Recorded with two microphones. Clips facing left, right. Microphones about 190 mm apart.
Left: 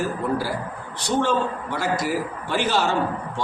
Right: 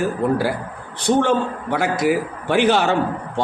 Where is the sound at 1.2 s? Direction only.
60° right (ahead or behind).